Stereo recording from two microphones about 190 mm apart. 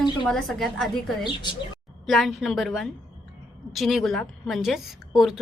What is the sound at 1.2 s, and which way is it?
Speech, 25° left (ahead or behind).